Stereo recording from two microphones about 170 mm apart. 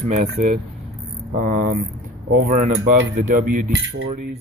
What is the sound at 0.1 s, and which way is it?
Speech, 45° right (ahead or behind).